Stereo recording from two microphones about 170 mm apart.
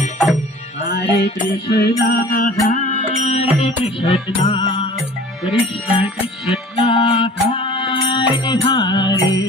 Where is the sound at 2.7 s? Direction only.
45° left (ahead or behind); by 4.8 s 30° left (ahead or behind).